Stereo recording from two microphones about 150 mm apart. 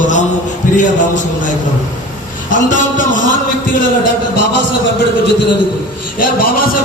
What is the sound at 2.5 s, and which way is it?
Speech, 60° left (ahead or behind).